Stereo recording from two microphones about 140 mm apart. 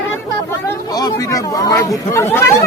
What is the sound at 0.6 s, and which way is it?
Speech, 25° left (ahead or behind).